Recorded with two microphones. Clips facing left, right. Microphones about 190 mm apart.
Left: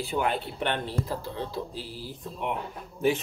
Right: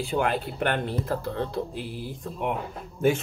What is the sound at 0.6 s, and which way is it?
Speech, 50° right (ahead or behind).